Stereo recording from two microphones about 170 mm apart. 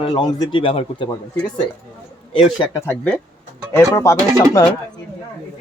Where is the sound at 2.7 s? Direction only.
10° left (ahead or behind).